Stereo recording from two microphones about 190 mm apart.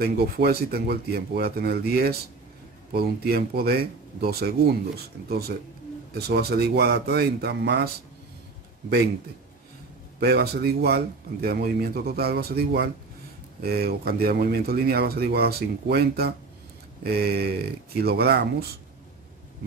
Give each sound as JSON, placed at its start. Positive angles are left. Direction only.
{"t": 0.0, "sound": "speech", "side_deg": -55}
{"t": 10.2, "sound": "speech", "side_deg": -55}